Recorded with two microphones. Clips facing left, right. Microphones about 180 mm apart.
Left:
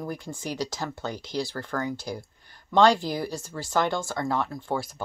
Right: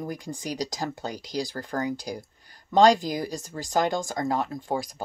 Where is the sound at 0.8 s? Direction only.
40° right (ahead or behind).